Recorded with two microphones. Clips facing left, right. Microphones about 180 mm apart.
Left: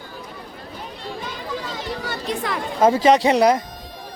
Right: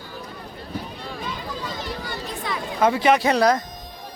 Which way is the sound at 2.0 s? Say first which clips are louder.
Left 4 dB; 70° left (ahead or behind).